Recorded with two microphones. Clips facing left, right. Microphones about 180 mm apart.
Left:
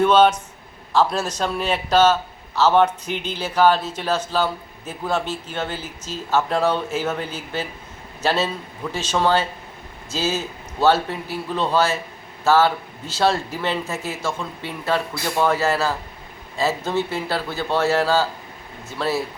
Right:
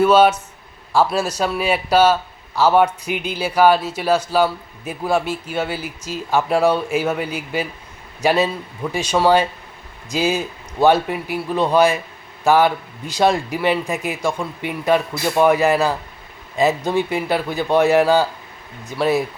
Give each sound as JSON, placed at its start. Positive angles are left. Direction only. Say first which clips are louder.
{"t": 0.0, "sound": "a man's voice", "louder": "right 2 dB", "side_deg": -10}